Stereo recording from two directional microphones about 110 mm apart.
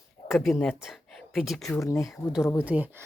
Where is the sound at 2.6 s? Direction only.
15° right (ahead or behind).